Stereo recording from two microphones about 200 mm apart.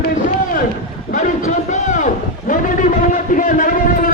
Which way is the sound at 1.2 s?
40° left (ahead or behind).